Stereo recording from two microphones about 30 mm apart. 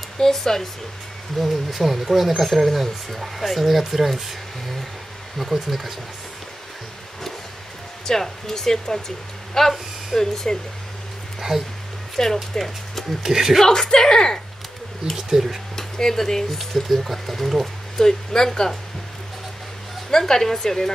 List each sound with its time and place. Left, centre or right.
0.2 s speech: centre
1.4 s speech: centre
5.7 s speech: centre
8.0 s speech: centre
11.5 s speech: centre
12.2 s speech: centre
13.2 s speech: centre
13.7 s speech: left
15.1 s speech: centre
15.7 s speech: centre
16.5 s speech: centre
17.9 s speech: left
20.1 s speech: centre